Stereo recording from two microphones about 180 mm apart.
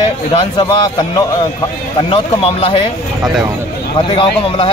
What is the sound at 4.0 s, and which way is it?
Speech, 30° left (ahead or behind).